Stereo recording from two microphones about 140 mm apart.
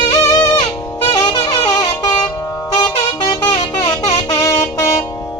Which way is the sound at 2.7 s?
30° left (ahead or behind).